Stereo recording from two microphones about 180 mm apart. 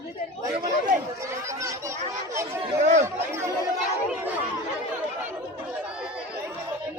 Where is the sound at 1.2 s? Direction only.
15° right (ahead or behind).